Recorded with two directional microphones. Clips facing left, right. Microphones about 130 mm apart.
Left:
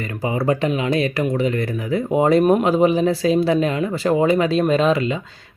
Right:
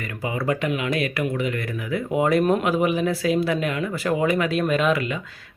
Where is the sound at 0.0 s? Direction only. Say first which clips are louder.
Left 5 dB; 30° left (ahead or behind).